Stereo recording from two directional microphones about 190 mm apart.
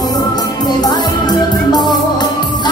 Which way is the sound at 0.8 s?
20° left (ahead or behind).